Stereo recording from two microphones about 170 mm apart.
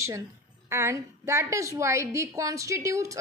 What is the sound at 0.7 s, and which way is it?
A woman's voice, 15° right (ahead or behind).